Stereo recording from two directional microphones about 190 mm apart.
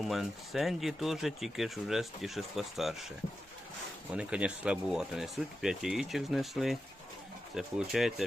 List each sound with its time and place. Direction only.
0.0 s speech: centre (ahead or behind)
4.1 s speech: 5° right (ahead or behind)